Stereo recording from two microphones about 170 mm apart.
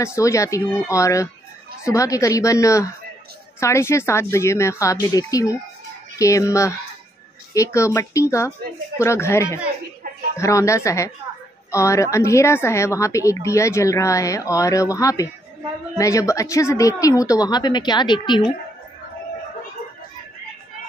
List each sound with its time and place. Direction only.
0.0 s a woman's voice: 15° left (ahead or behind)